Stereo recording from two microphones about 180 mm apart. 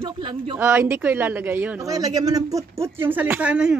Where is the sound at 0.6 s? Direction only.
10° right (ahead or behind).